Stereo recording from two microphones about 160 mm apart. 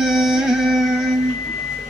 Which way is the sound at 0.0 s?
Centre (ahead or behind).